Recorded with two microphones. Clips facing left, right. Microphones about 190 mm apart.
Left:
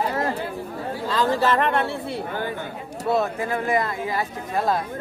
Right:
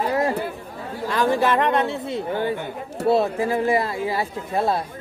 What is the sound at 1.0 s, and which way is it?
Speech, 15° right (ahead or behind).